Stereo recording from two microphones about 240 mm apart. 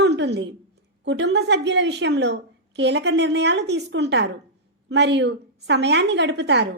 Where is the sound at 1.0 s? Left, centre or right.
Right.